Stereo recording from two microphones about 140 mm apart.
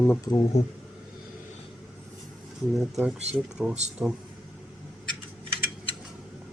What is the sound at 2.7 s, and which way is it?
Speech, centre (ahead or behind).